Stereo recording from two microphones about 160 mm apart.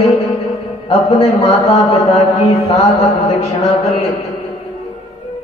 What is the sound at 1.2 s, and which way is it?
Mantra, 40° left (ahead or behind).